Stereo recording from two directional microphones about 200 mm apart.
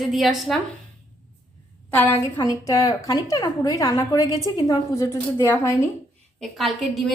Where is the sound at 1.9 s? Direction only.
10° left (ahead or behind).